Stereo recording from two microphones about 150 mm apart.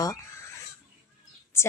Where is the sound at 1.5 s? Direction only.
15° left (ahead or behind).